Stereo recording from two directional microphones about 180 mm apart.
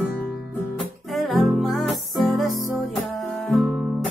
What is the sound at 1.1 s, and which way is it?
Music, centre (ahead or behind).